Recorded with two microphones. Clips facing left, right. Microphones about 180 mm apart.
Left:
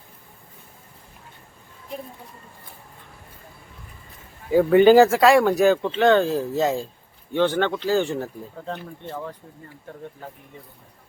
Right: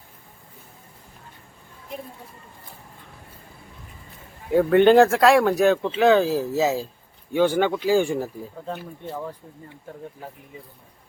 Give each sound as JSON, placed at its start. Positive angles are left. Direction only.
{"t": 4.4, "sound": "speech", "side_deg": 0}